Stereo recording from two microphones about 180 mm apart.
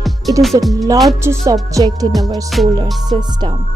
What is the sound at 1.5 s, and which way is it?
Speech, 20° right (ahead or behind).